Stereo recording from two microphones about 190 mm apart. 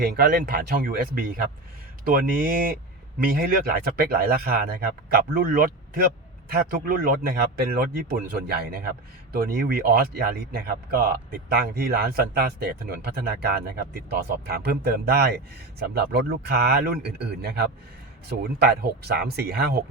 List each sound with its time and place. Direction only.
0.0 s a man's voice: 55° right (ahead or behind)